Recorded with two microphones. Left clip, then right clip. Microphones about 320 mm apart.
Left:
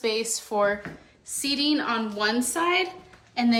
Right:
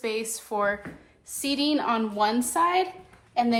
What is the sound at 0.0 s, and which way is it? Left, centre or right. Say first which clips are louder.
Speech: left 3 dB; centre.